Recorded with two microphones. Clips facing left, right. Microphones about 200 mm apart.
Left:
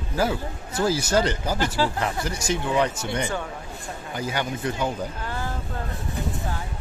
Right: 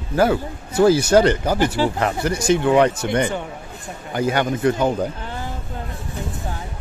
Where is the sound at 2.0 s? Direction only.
60° right (ahead or behind).